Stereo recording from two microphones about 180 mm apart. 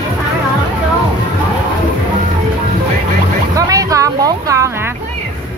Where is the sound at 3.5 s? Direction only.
20° right (ahead or behind).